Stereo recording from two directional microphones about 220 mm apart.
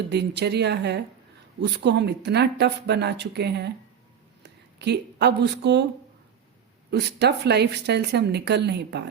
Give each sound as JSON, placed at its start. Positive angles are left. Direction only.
{"t": 0.1, "sound": "a woman's voice", "side_deg": -50}
{"t": 6.9, "sound": "a woman's voice", "side_deg": -50}